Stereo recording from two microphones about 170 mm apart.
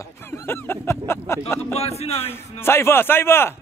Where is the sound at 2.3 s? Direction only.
15° left (ahead or behind).